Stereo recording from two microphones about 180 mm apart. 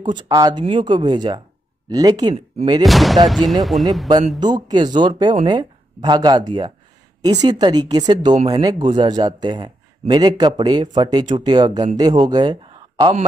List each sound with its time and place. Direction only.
0.0 s a man's voice: 25° right (ahead or behind)
2.8 s speech: centre (ahead or behind)
4.4 s a man's voice: 25° right (ahead or behind)